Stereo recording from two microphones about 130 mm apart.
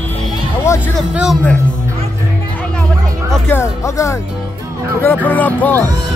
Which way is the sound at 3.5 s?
20° left (ahead or behind).